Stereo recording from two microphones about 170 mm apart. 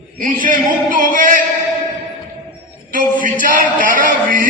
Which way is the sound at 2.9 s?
50° right (ahead or behind).